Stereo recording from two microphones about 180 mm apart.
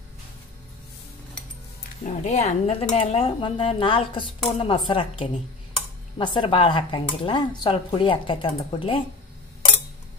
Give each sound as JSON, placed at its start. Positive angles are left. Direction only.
{"t": 2.0, "sound": "a woman's voice", "side_deg": 40}